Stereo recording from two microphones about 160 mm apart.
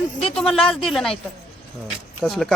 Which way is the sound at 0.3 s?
5° left (ahead or behind).